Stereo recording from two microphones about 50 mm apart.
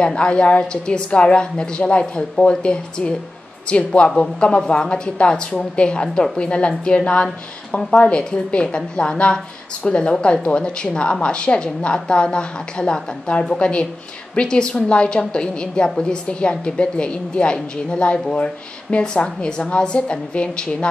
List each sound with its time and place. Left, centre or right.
0.0 s a woman's voice: left